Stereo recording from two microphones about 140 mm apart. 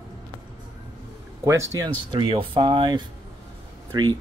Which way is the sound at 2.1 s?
40° right (ahead or behind).